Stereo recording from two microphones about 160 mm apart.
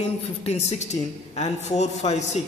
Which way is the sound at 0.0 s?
40° left (ahead or behind).